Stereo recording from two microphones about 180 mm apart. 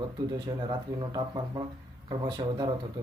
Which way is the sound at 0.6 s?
25° right (ahead or behind).